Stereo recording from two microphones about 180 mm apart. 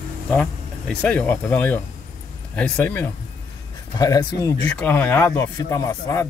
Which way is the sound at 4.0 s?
20° left (ahead or behind).